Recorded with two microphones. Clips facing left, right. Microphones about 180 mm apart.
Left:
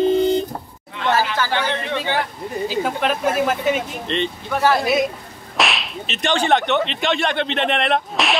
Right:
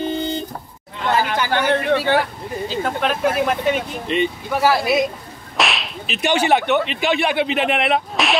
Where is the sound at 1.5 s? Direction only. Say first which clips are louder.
Right 9 dB; 50° right (ahead or behind).